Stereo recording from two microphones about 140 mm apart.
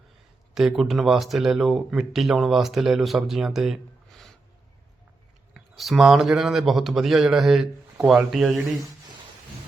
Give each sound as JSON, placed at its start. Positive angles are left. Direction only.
{"t": 0.5, "sound": "speech", "side_deg": 0}
{"t": 5.7, "sound": "speech", "side_deg": 0}